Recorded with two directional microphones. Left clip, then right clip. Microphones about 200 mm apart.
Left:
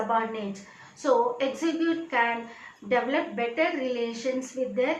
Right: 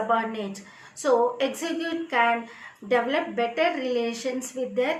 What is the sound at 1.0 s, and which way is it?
A woman's voice, 50° right (ahead or behind).